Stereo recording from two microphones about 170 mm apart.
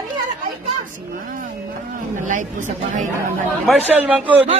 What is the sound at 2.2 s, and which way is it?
Speech, 50° right (ahead or behind).